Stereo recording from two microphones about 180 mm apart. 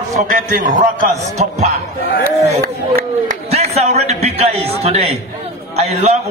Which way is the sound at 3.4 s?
35° right (ahead or behind).